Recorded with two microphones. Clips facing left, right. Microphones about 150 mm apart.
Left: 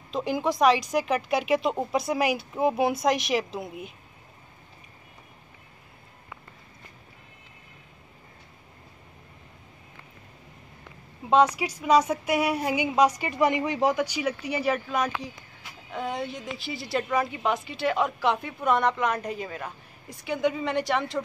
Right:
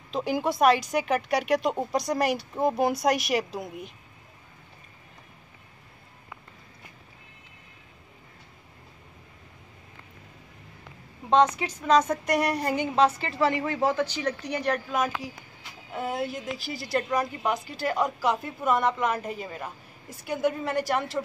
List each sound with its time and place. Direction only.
0.1 s a woman's voice: centre (ahead or behind)
11.2 s a woman's voice: 10° left (ahead or behind)